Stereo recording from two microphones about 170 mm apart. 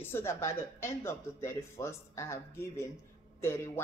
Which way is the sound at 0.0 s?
15° left (ahead or behind).